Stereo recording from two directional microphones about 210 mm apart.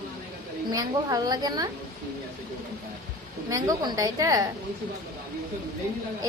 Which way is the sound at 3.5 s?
15° right (ahead or behind).